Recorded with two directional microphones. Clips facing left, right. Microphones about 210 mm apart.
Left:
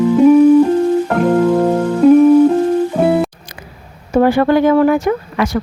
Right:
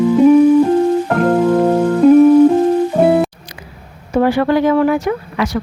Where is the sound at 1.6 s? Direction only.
10° right (ahead or behind).